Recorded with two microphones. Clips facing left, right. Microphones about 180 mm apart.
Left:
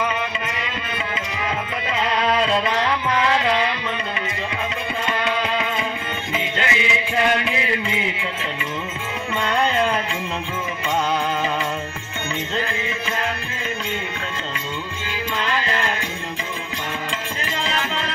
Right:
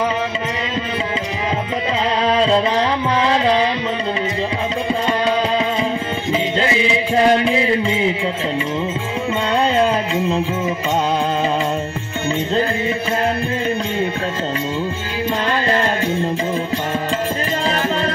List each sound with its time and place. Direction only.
2.2 s music: 30° right (ahead or behind)
6.3 s music: 30° right (ahead or behind)
9.8 s music: 35° right (ahead or behind)
17.6 s music: 40° right (ahead or behind)